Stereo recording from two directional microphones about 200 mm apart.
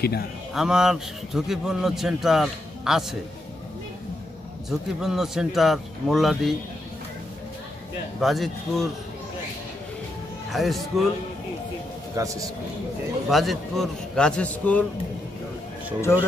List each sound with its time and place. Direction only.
0.0 s speech: 50° left (ahead or behind)
0.6 s a man's voice: 5° right (ahead or behind)
4.6 s a man's voice: centre (ahead or behind)
8.2 s a man's voice: centre (ahead or behind)
10.5 s a man's voice: centre (ahead or behind)
12.2 s speech: 15° right (ahead or behind)
13.3 s a man's voice: centre (ahead or behind)